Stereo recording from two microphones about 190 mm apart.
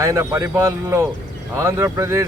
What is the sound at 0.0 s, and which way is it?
Speech, 15° right (ahead or behind).